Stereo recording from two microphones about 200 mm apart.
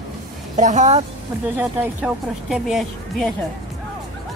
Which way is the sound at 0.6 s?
35° right (ahead or behind).